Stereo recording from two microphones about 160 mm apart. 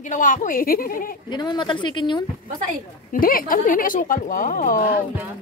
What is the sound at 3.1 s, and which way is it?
Speech, 60° left (ahead or behind).